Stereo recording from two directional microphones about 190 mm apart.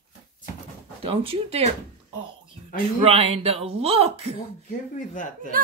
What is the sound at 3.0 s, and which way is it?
Speech, 30° right (ahead or behind).